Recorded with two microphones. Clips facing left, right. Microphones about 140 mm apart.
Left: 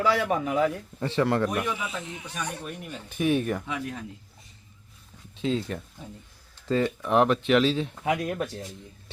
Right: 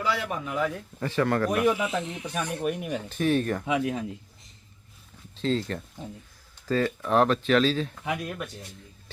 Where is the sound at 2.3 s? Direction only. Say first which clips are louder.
Right 7 dB; 65° right (ahead or behind).